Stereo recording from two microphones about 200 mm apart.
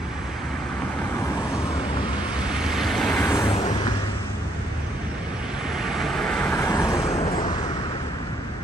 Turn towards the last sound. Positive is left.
turn(degrees=20)  # may be behind; listen again after turning